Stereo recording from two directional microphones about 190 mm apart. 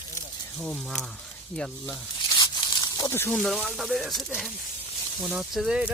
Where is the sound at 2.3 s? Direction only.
20° left (ahead or behind).